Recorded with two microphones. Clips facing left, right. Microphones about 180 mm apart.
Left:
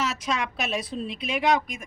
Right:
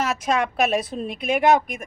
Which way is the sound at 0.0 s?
55° right (ahead or behind).